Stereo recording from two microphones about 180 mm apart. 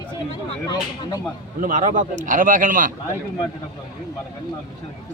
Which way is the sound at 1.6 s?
45° right (ahead or behind).